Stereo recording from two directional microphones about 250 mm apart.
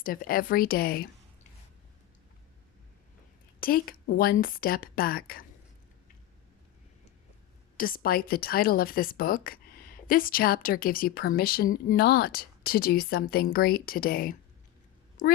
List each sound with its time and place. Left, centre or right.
0.0 s a woman's voice: left
3.6 s a woman's voice: left
7.8 s a woman's voice: left